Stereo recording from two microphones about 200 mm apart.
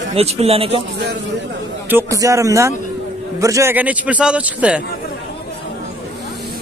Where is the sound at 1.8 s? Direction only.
15° right (ahead or behind).